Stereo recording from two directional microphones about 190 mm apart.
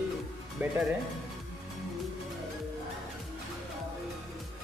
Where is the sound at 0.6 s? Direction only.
5° right (ahead or behind).